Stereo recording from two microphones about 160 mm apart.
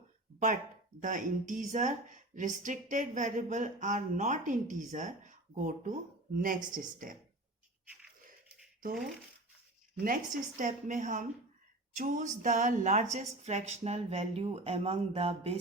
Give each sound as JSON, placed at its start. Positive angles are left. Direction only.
{"t": 0.3, "sound": "a woman's voice", "side_deg": -50}
{"t": 10.6, "sound": "a woman's voice", "side_deg": -55}